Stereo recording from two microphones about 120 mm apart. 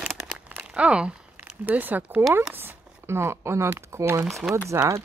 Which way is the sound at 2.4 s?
15° right (ahead or behind).